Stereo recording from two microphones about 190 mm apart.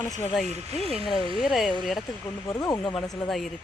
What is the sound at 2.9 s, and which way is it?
Speech, centre (ahead or behind).